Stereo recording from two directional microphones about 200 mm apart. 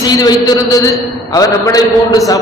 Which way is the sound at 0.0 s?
20° left (ahead or behind).